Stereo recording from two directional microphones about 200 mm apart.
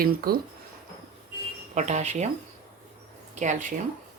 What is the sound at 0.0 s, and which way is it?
Speech, 50° right (ahead or behind).